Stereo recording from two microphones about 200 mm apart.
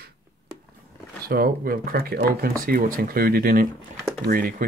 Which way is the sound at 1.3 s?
50° right (ahead or behind).